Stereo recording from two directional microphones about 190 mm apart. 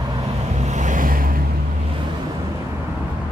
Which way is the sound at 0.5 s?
40° right (ahead or behind).